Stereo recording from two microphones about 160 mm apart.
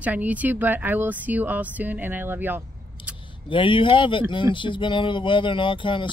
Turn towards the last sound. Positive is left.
turn(degrees=30)  # may be behind; listen again after turning